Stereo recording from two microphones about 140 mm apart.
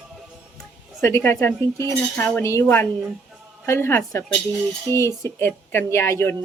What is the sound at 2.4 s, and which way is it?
Speech, 20° left (ahead or behind).